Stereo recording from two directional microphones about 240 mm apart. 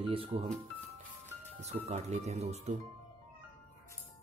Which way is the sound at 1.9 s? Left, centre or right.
Right.